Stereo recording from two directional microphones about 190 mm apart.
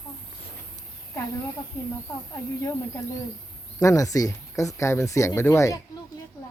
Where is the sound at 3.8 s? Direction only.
15° left (ahead or behind).